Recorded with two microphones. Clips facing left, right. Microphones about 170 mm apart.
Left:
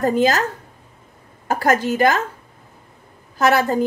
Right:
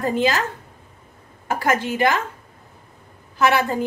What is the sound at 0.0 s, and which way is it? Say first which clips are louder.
Speech: left 3 dB; 45° left (ahead or behind).